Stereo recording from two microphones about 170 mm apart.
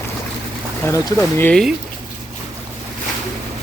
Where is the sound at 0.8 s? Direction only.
20° left (ahead or behind).